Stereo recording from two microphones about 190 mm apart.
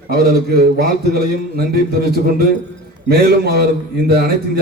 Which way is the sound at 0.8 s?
55° right (ahead or behind).